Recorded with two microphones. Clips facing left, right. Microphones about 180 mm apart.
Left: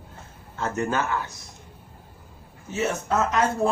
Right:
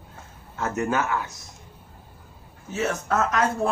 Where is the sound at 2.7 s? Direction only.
Centre (ahead or behind).